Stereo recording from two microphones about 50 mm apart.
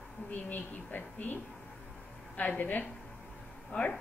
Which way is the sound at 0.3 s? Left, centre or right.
Left.